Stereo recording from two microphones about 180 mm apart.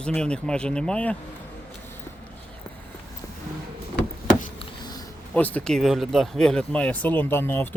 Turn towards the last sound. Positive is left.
turn(degrees=10)  # may be behind; listen again after turning